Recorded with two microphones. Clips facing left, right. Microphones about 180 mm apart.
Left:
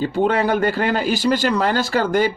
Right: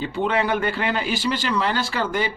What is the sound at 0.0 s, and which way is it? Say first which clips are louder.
Speech: left 5 dB; 40° left (ahead or behind).